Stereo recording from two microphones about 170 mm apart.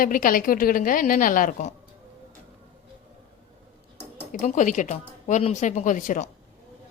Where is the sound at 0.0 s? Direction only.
55° left (ahead or behind).